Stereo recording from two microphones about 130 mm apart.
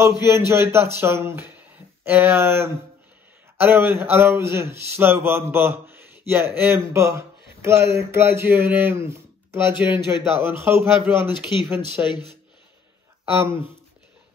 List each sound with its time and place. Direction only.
0.5 s speech: 20° right (ahead or behind)
13.2 s speech: 20° right (ahead or behind)